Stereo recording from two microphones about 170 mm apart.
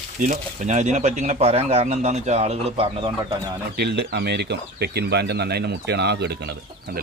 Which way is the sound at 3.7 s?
70° right (ahead or behind).